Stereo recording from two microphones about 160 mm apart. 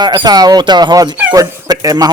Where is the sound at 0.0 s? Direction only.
25° right (ahead or behind).